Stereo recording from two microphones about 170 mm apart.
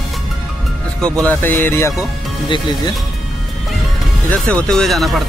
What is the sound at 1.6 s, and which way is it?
Speech, 15° left (ahead or behind).